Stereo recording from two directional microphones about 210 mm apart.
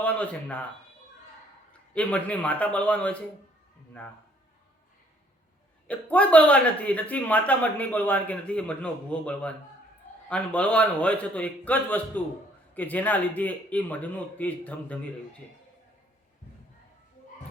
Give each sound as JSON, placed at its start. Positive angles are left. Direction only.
{"t": 0.0, "sound": "speech", "side_deg": 5}
{"t": 1.9, "sound": "speech", "side_deg": 5}
{"t": 5.9, "sound": "speech", "side_deg": 5}